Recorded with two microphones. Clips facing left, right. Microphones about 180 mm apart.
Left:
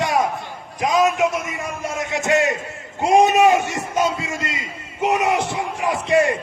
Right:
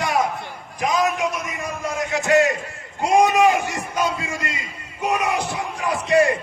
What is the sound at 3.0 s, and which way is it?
A man's voice, 25° left (ahead or behind).